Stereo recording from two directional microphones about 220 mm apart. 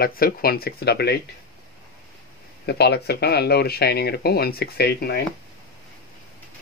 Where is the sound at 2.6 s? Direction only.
45° left (ahead or behind).